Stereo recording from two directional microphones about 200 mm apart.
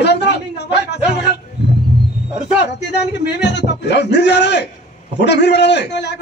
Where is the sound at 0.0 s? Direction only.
60° left (ahead or behind).